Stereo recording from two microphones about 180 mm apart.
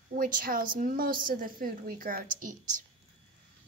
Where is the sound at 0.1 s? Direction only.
50° right (ahead or behind).